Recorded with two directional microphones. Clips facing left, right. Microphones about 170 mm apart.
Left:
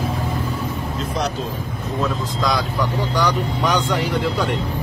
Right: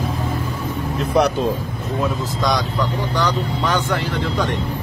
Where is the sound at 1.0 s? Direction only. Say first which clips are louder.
Right 8 dB; 60° right (ahead or behind).